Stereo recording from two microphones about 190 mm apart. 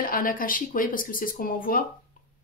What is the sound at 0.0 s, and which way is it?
Speech, 50° left (ahead or behind).